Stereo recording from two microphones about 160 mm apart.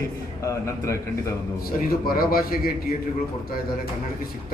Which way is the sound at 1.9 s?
65° left (ahead or behind).